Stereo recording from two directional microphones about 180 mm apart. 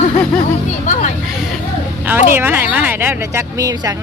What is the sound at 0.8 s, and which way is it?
Speech, 45° left (ahead or behind).